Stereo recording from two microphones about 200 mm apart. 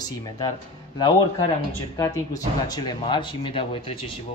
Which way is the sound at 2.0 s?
15° left (ahead or behind).